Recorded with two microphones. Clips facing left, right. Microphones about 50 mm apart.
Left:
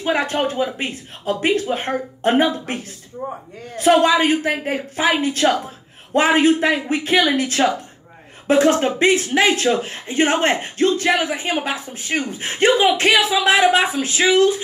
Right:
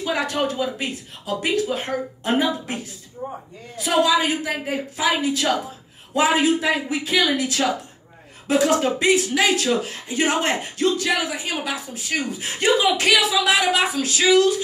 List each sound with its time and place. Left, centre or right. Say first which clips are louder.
0.0 s speech: left 3 dB; left
3.2 s speech: left 3 dB; centre
3.7 s speech: left 5 dB; left